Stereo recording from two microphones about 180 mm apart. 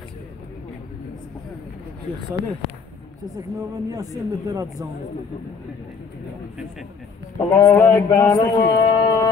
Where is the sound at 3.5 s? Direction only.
20° right (ahead or behind).